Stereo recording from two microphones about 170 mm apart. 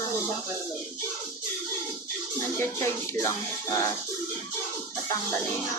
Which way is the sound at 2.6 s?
15° left (ahead or behind).